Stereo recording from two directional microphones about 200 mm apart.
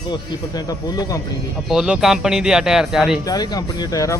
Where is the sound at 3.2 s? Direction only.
20° left (ahead or behind).